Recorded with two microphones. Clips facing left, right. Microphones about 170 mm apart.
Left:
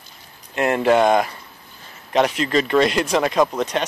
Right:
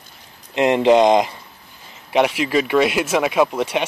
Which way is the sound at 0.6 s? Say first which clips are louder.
Right 3 dB; 20° right (ahead or behind).